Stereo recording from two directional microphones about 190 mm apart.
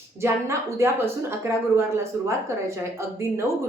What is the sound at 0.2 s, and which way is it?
A woman's voice, 15° right (ahead or behind).